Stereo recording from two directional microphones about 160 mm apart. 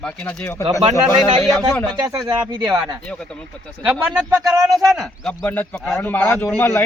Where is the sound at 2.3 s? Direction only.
20° right (ahead or behind).